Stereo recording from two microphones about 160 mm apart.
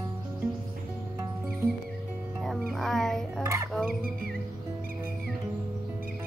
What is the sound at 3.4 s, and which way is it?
Fowl, 20° right (ahead or behind).